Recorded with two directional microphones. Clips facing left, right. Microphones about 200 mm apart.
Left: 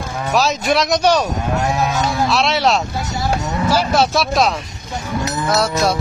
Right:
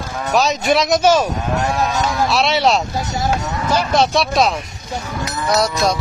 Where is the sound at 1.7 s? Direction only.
15° left (ahead or behind).